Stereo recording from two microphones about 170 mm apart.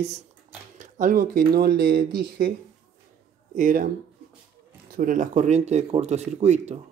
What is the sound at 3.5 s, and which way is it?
Speech, 55° right (ahead or behind).